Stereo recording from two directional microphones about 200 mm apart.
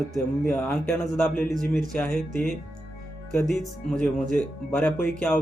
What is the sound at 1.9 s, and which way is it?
Mantra, centre (ahead or behind).